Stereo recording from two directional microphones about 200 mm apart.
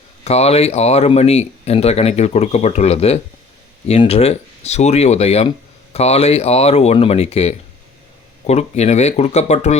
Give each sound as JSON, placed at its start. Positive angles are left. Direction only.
{"t": 0.3, "sound": "speech", "side_deg": 30}